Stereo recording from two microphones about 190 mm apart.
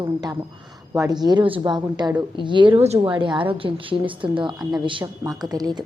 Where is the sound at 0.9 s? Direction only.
20° right (ahead or behind).